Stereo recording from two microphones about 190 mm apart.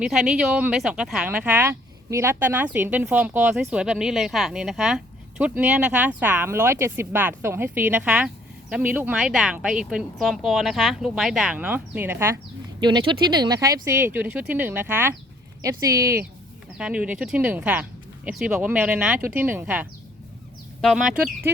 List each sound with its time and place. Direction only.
0.0 s speech: centre (ahead or behind)
12.8 s speech: 25° right (ahead or behind)
16.7 s speech: 5° right (ahead or behind)